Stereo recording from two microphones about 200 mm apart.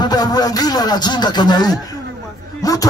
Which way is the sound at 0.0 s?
20° left (ahead or behind).